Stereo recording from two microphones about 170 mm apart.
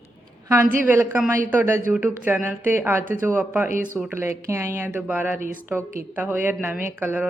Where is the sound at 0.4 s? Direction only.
15° right (ahead or behind).